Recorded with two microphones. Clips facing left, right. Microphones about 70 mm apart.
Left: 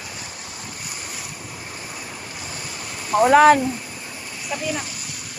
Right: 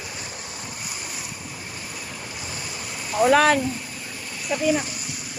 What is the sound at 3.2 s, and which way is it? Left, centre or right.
Speech, left.